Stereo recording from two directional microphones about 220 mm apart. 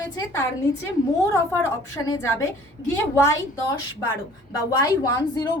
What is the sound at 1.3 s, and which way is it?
A woman's voice, 15° left (ahead or behind).